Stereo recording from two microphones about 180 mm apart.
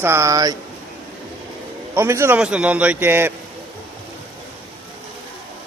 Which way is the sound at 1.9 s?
15° right (ahead or behind).